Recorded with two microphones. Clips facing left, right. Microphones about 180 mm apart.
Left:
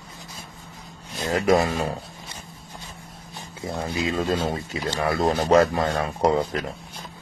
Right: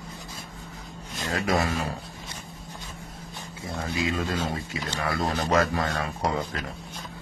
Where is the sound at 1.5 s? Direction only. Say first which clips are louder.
Left 6 dB; 25° left (ahead or behind).